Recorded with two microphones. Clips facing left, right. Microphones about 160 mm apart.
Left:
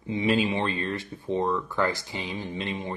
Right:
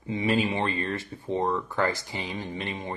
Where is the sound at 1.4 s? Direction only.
20° right (ahead or behind).